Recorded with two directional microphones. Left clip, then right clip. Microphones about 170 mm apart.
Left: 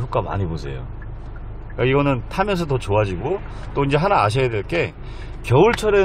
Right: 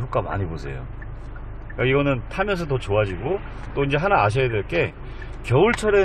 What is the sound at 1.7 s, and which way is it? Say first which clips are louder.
A man's voice: left 2 dB; 15° left (ahead or behind).